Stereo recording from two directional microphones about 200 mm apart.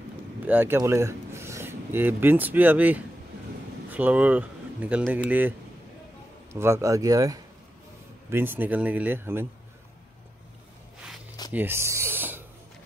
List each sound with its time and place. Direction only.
0.5 s speech: 10° right (ahead or behind)
6.5 s speech: 15° right (ahead or behind)
11.5 s speech: 10° right (ahead or behind)